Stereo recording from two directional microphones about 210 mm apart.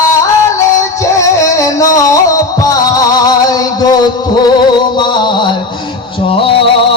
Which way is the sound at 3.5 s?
20° left (ahead or behind).